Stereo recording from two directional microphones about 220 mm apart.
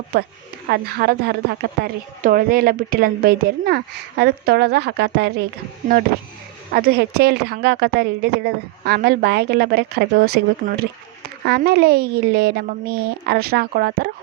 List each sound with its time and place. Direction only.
0.7 s a woman's voice: 45° right (ahead or behind)
6.7 s a woman's voice: 45° right (ahead or behind)